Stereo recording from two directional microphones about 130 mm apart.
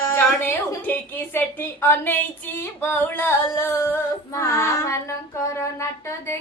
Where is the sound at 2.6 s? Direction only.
15° left (ahead or behind).